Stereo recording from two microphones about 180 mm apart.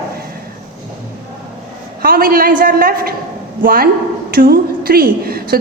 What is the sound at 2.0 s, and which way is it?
A woman's voice, 55° right (ahead or behind).